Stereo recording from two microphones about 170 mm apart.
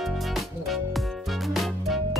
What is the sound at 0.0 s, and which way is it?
Music, centre (ahead or behind).